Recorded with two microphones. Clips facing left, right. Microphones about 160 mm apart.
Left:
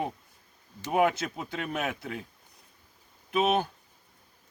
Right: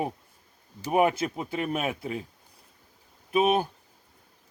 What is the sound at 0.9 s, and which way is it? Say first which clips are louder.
Speech: right 2 dB; 25° right (ahead or behind).